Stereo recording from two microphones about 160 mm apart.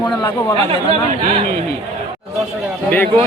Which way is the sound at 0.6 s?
35° right (ahead or behind).